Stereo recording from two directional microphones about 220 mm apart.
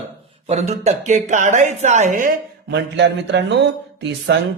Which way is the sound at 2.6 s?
50° right (ahead or behind).